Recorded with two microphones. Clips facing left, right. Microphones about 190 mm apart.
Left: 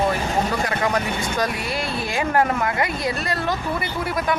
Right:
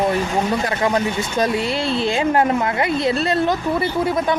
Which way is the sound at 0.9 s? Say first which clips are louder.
Right 3 dB; 25° right (ahead or behind).